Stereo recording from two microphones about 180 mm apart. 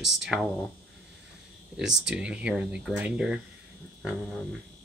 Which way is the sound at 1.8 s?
5° right (ahead or behind).